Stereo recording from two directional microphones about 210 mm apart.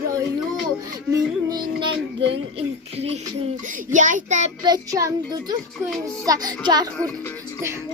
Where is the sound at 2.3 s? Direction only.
30° right (ahead or behind).